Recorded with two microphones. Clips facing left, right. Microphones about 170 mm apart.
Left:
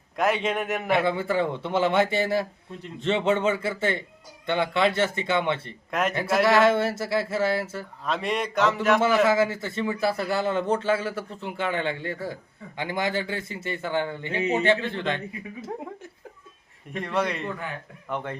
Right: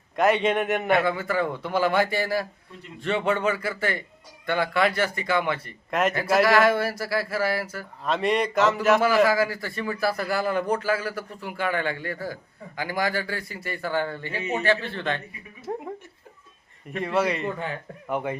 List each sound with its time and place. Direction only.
0.2 s mantra: centre (ahead or behind)
1.0 s a man's voice: 30° left (ahead or behind)
5.9 s mantra: centre (ahead or behind)
6.4 s a man's voice: 25° left (ahead or behind)
8.0 s mantra: centre (ahead or behind)
9.2 s a man's voice: 25° left (ahead or behind)
15.7 s mantra: centre (ahead or behind)
16.9 s mantra: centre (ahead or behind)
18.1 s speech: 10° right (ahead or behind)